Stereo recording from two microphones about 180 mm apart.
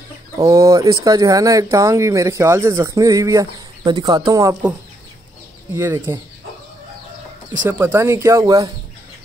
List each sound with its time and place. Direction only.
0.4 s speech: 15° right (ahead or behind)
5.8 s speech: 15° right (ahead or behind)
7.6 s speech: 10° right (ahead or behind)